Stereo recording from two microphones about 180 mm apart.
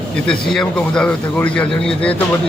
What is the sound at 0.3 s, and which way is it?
Speech, 5° left (ahead or behind).